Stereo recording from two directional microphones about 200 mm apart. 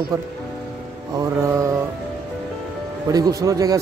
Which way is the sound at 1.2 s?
15° right (ahead or behind).